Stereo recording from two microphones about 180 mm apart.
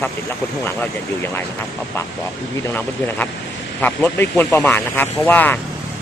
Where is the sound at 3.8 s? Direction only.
10° left (ahead or behind).